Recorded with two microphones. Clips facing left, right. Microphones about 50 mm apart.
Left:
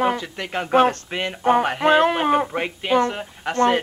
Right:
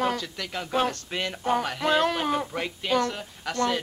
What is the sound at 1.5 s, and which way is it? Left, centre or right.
A man's voice, left.